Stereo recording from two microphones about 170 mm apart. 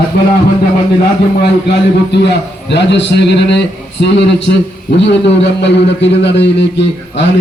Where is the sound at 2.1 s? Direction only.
85° left.